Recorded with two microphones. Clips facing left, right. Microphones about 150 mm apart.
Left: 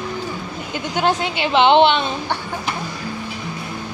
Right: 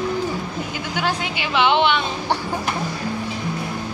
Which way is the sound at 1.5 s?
25° left (ahead or behind).